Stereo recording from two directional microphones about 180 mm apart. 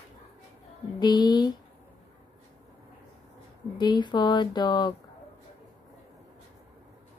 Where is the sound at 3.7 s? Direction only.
25° left (ahead or behind).